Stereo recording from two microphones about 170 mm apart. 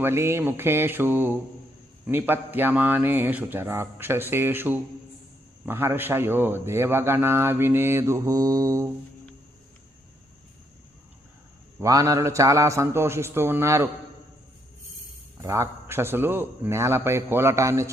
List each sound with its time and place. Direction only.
0.0 s a man's voice: 15° right (ahead or behind)
11.8 s a man's voice: 20° right (ahead or behind)
15.4 s a man's voice: 15° right (ahead or behind)